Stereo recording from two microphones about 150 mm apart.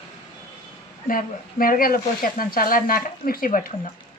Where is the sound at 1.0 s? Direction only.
70° left (ahead or behind).